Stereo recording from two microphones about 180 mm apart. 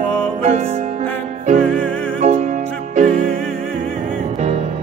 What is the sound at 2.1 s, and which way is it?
Music, 45° right (ahead or behind).